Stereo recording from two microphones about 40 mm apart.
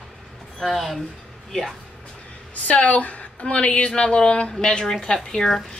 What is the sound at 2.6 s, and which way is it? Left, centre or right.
A woman's voice, left.